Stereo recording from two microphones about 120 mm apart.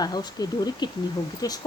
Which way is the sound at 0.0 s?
35° left (ahead or behind).